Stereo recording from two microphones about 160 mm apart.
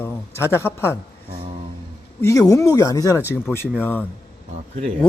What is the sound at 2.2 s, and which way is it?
Speech, 20° left (ahead or behind).